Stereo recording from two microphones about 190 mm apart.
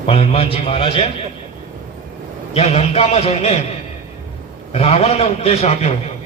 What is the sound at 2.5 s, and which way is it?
A man's voice, 35° left (ahead or behind).